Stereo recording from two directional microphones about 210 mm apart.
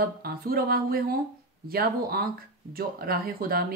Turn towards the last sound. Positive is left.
turn(degrees=-45)  # may be behind; listen again after turning